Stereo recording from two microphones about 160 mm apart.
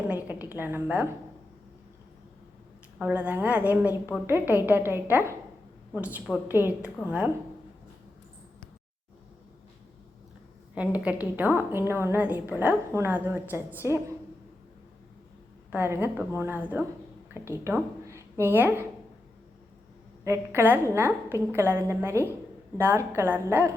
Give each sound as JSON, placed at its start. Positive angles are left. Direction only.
{"t": 0.3, "sound": "a woman's voice", "side_deg": -10}
{"t": 3.0, "sound": "a woman's voice", "side_deg": -10}
{"t": 10.8, "sound": "a woman's voice", "side_deg": -10}
{"t": 15.7, "sound": "a woman's voice", "side_deg": -15}
{"t": 20.2, "sound": "a woman's voice", "side_deg": -15}